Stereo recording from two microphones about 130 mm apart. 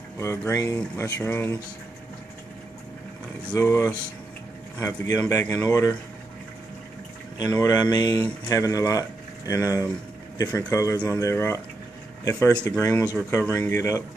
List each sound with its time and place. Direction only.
0.2 s speech: 20° left (ahead or behind)
3.5 s speech: 25° left (ahead or behind)
7.3 s speech: 30° left (ahead or behind)